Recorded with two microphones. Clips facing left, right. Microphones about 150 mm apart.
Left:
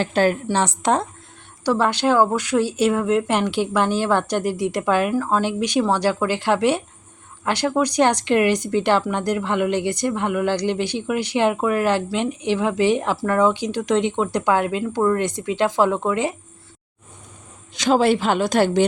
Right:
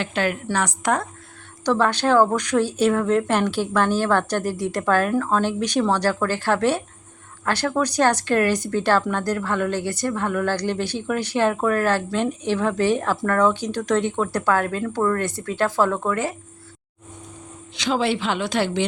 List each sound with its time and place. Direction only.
0.0 s a woman's voice: 35° left (ahead or behind)
0.5 s a woman's voice: 25° left (ahead or behind)
1.6 s speech: 10° left (ahead or behind)
17.7 s a woman's voice: 45° left (ahead or behind)